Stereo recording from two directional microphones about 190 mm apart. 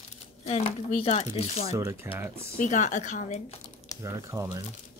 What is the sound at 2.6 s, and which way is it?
Speech, 40° left (ahead or behind).